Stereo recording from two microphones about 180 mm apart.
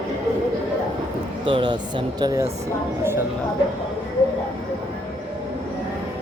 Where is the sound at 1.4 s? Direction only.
25° right (ahead or behind).